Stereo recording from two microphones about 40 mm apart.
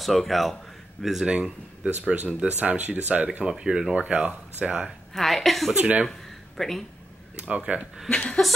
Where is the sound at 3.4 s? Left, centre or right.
Centre.